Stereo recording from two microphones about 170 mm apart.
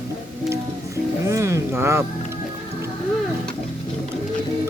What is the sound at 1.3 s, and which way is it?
Speech, 15° right (ahead or behind).